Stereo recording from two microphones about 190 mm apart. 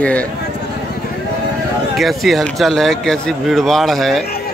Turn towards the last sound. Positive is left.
turn(degrees=0)  # may be behind; listen again after turning